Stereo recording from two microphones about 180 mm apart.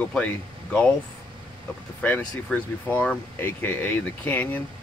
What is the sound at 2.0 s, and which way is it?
Speech, 10° left (ahead or behind).